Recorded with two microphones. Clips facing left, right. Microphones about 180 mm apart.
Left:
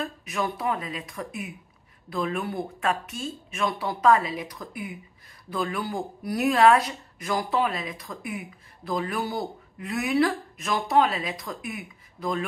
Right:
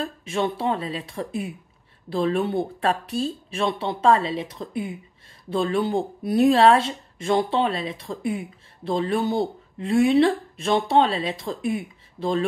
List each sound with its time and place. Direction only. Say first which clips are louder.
0.0 s speech: right 4 dB; 30° right (ahead or behind)